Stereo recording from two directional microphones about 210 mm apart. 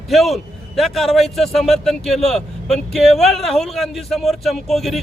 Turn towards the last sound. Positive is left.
turn(degrees=0)  # may be behind; listen again after turning